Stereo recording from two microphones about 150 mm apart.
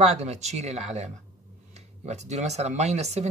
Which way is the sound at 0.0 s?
45° right (ahead or behind).